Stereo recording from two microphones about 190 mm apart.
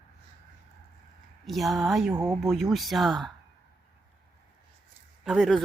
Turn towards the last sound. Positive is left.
turn(degrees=0)  # may be behind; listen again after turning